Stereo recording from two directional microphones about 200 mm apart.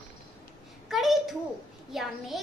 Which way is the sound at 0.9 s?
Centre (ahead or behind).